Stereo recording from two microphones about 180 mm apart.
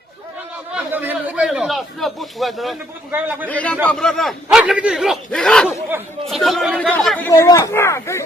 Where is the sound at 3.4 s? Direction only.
10° left (ahead or behind).